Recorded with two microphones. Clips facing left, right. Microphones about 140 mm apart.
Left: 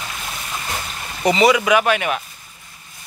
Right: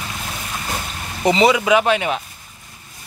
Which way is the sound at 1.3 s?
25° right (ahead or behind).